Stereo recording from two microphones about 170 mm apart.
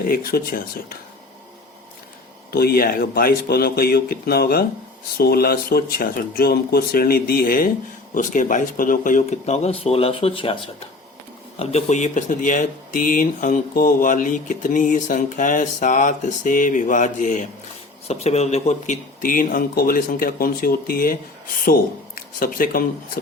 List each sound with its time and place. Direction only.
0.1 s speech: 60° left (ahead or behind)
2.5 s speech: 65° left (ahead or behind)